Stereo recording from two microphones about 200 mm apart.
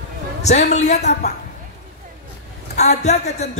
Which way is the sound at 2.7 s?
35° left (ahead or behind).